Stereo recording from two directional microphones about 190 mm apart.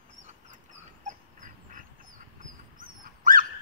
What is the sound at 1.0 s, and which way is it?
Duck, 45° right (ahead or behind).